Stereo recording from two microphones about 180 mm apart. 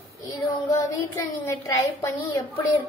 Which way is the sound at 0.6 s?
20° left (ahead or behind).